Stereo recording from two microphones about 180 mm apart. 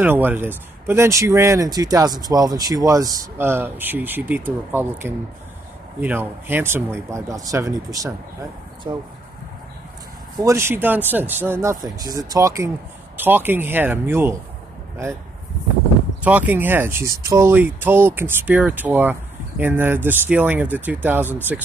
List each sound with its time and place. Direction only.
0.0 s speech: 10° right (ahead or behind)
10.4 s speech: 15° right (ahead or behind)
16.2 s speech: 10° right (ahead or behind)